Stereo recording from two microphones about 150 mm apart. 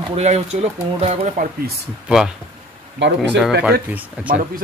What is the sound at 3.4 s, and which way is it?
Speech, 10° right (ahead or behind).